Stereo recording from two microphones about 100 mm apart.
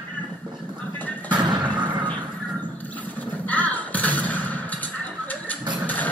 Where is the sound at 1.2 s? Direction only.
50° right (ahead or behind).